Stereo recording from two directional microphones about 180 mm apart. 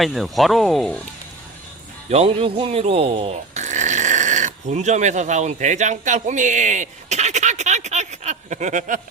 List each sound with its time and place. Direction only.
0.0 s speech: centre (ahead or behind)
2.0 s speech: 35° right (ahead or behind)